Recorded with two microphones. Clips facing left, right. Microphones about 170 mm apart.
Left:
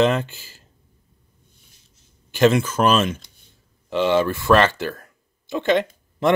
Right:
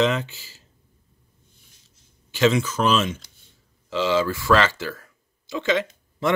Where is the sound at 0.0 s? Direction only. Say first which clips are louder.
Left 3 dB; 55° left (ahead or behind).